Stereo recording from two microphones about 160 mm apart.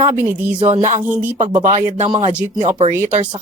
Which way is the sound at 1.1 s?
10° right (ahead or behind).